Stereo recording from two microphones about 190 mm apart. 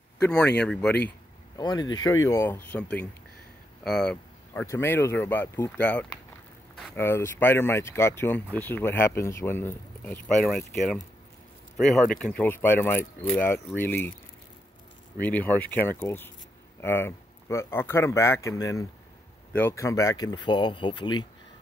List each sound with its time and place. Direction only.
0.6 s speech: 5° left (ahead or behind)
1.6 s speech: 20° left (ahead or behind); by 10.6 s centre (ahead or behind)
11.7 s speech: centre (ahead or behind)
15.1 s speech: 10° left (ahead or behind); by 21.3 s 25° left (ahead or behind)